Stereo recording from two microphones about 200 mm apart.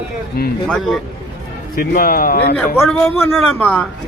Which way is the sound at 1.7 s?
45° left (ahead or behind).